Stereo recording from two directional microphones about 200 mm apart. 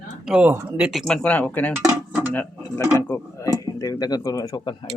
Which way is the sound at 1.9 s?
5° right (ahead or behind).